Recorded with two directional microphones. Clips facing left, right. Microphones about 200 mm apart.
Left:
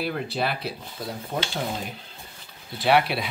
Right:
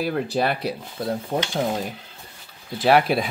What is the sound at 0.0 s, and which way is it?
Speech, 45° right (ahead or behind).